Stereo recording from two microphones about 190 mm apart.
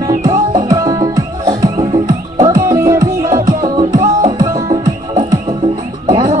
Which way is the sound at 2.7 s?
15° right (ahead or behind).